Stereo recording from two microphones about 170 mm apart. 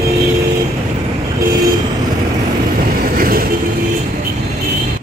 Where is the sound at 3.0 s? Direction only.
60° right (ahead or behind).